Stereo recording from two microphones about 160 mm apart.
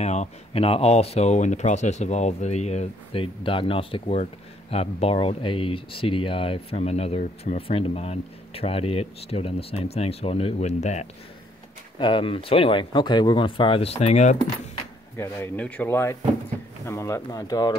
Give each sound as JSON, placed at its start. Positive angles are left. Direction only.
{"t": 0.0, "sound": "speech", "side_deg": 45}
{"t": 12.0, "sound": "speech", "side_deg": 30}
{"t": 15.1, "sound": "speech", "side_deg": 15}